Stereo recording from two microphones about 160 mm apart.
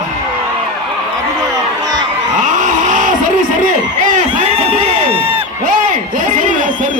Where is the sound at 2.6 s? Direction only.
50° right (ahead or behind).